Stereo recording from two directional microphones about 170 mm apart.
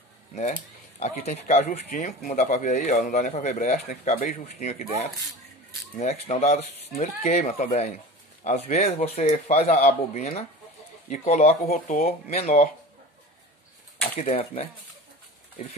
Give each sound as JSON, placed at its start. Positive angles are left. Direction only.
{"t": 0.3, "sound": "speech", "side_deg": 45}
{"t": 5.9, "sound": "speech", "side_deg": 40}
{"t": 11.7, "sound": "speech", "side_deg": 55}
{"t": 12.3, "sound": "speech", "side_deg": 40}
{"t": 14.1, "sound": "speech", "side_deg": 35}